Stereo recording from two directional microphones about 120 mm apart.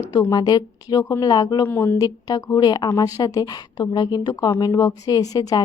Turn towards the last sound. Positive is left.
turn(degrees=35)  # may be behind; listen again after turning